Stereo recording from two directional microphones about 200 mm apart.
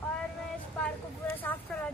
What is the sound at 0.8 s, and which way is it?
Speech, 10° left (ahead or behind).